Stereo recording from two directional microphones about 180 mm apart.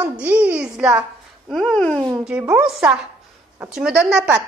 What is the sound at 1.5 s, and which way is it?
Speech, 5° left (ahead or behind).